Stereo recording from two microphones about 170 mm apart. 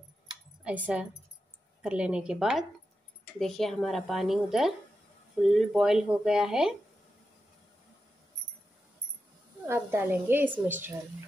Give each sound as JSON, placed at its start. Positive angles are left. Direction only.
{"t": 0.7, "sound": "a woman's voice", "side_deg": -10}
{"t": 9.7, "sound": "a woman's voice", "side_deg": -15}